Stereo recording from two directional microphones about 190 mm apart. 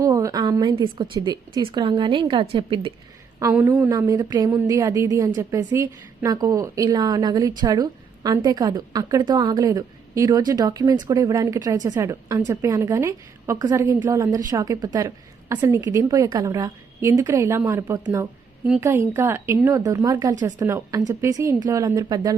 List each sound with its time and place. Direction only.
0.0 s a woman's voice: 15° right (ahead or behind)
3.4 s a woman's voice: 10° right (ahead or behind)